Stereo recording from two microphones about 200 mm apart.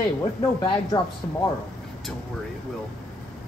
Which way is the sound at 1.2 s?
15° left (ahead or behind).